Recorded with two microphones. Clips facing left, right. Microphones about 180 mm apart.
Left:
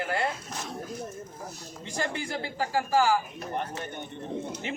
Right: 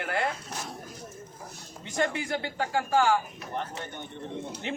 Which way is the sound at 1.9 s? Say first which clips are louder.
Right 3 dB; centre (ahead or behind).